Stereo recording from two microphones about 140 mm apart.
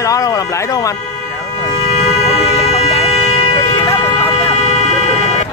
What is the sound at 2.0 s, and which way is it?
Vehicle, 45° left (ahead or behind).